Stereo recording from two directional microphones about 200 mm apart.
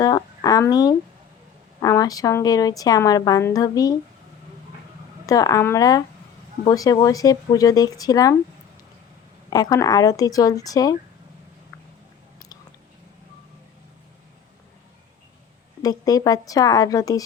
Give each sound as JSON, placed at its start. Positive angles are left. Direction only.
{"t": 0.0, "sound": "a woman's voice", "side_deg": 20}
{"t": 5.2, "sound": "a woman's voice", "side_deg": 15}
{"t": 9.5, "sound": "a woman's voice", "side_deg": 20}
{"t": 15.8, "sound": "a woman's voice", "side_deg": 20}